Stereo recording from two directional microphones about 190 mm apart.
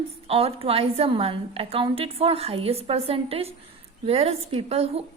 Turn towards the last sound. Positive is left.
turn(degrees=-30)  # may be behind; listen again after turning